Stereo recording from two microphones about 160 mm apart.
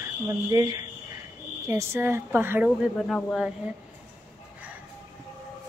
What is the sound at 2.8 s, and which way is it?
Speech, centre (ahead or behind).